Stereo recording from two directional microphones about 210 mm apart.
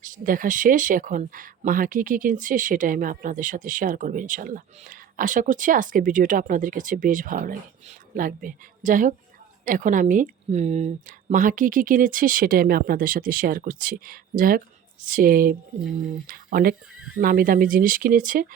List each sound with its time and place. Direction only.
0.0 s speech: 40° right (ahead or behind)